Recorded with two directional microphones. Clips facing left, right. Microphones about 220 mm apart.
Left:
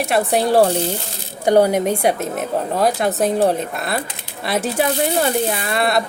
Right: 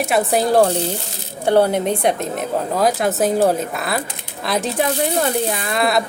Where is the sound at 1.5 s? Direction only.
15° left (ahead or behind).